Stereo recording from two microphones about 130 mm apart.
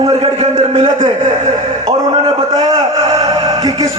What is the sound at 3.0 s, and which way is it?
Music, 30° right (ahead or behind).